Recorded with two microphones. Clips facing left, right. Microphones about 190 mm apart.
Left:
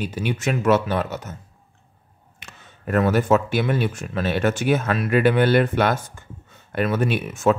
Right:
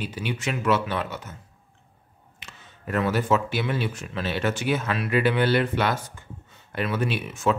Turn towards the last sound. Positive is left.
turn(degrees=45)  # may be behind; listen again after turning